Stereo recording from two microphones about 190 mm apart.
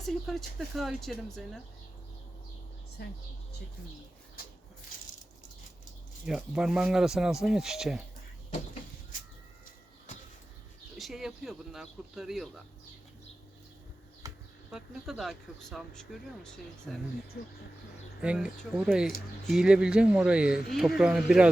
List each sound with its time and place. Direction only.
0.0 s speech: centre (ahead or behind)
6.2 s speech: 5° right (ahead or behind)
10.9 s speech: centre (ahead or behind)
14.2 s a sound: 15° right (ahead or behind)
14.7 s speech: 5° right (ahead or behind)
17.4 s speech: 55° left (ahead or behind)
18.2 s speech: 5° right (ahead or behind)